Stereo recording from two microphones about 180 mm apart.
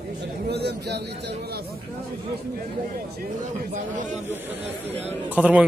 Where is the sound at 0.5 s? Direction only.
65° right (ahead or behind).